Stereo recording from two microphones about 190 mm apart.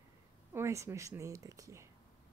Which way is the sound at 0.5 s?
15° right (ahead or behind).